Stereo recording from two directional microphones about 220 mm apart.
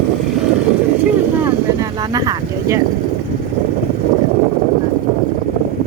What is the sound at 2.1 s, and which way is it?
Speech, 15° right (ahead or behind).